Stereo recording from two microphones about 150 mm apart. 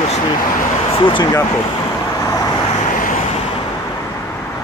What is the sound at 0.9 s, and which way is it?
Speech, 35° left (ahead or behind).